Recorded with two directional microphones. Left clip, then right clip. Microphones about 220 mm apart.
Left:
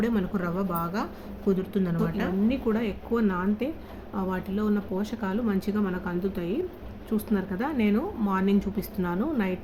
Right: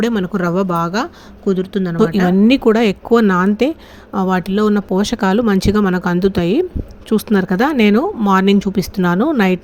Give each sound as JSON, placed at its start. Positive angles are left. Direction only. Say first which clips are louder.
{"t": 0.0, "sound": "speech", "louder": "right 11 dB", "side_deg": -35}
{"t": 2.5, "sound": "speech", "louder": "right 16 dB", "side_deg": -45}